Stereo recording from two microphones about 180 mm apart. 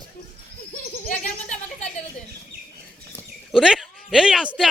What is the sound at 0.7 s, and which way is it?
Bird, 45° left (ahead or behind).